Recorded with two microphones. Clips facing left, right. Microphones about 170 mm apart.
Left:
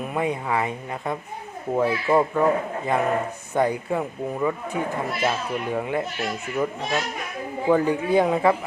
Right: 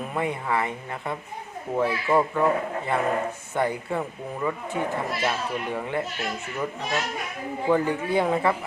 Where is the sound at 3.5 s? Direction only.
15° left (ahead or behind).